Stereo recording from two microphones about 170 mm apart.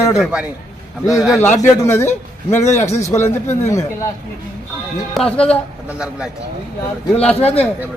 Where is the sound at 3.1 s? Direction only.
15° left (ahead or behind).